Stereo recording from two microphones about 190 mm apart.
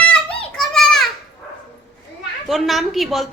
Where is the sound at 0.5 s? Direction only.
Centre (ahead or behind).